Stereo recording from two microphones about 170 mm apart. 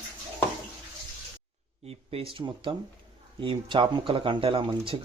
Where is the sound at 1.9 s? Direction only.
35° right (ahead or behind).